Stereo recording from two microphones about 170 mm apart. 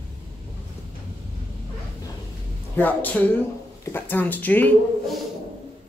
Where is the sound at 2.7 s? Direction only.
10° left (ahead or behind).